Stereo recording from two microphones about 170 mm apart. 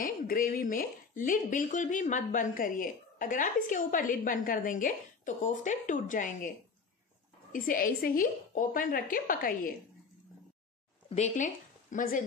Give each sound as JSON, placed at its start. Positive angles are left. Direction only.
{"t": 0.0, "sound": "speech", "side_deg": 55}
{"t": 7.5, "sound": "a woman's voice", "side_deg": 55}
{"t": 11.1, "sound": "speech", "side_deg": 40}